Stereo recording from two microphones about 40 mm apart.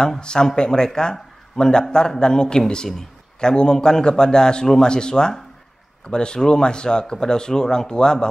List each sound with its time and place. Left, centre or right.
0.2 s a man's voice: left